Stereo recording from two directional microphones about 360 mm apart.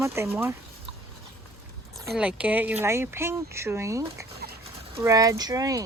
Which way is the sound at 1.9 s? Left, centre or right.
Centre.